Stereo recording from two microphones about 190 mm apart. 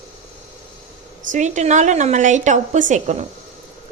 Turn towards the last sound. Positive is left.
turn(degrees=-40)  # may be behind; listen again after turning